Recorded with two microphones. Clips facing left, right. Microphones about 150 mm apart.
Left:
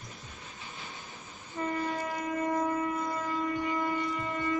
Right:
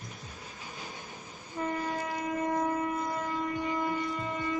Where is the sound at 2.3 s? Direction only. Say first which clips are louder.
Even; 10° right (ahead or behind).